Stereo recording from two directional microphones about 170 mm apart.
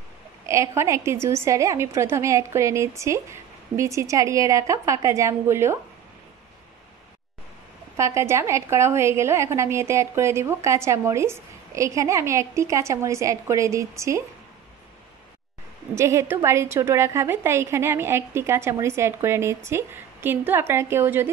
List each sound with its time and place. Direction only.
0.5 s a woman's voice: 15° right (ahead or behind)
8.0 s a woman's voice: 15° right (ahead or behind)
15.9 s a woman's voice: 15° right (ahead or behind)